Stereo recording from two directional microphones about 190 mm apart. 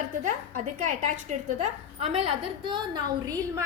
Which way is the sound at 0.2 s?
40° right (ahead or behind).